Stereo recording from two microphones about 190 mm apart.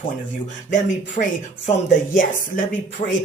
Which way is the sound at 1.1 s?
45° left (ahead or behind).